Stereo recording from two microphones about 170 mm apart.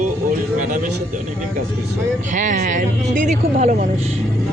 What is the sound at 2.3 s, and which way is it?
Speech, 45° right (ahead or behind).